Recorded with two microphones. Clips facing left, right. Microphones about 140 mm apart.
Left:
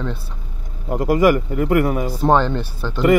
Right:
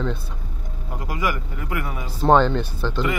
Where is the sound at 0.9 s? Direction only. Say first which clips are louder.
Left 12 dB; 50° left (ahead or behind).